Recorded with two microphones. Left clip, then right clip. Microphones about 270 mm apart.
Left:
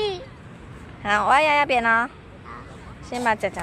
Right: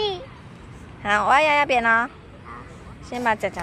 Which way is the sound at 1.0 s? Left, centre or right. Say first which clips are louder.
Even; centre.